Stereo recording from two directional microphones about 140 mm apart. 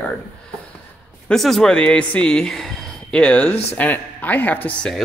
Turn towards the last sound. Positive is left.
turn(degrees=10)  # may be behind; listen again after turning